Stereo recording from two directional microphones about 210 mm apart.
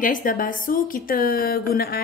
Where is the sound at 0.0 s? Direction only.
40° left (ahead or behind).